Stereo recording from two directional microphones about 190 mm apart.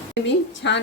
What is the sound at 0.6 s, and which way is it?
Speech, 65° left (ahead or behind).